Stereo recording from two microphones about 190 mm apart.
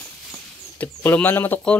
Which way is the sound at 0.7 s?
10° left (ahead or behind).